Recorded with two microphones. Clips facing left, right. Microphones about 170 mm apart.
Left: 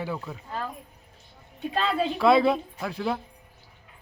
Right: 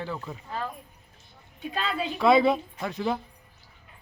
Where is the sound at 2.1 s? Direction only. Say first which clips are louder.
Right 1 dB; centre (ahead or behind).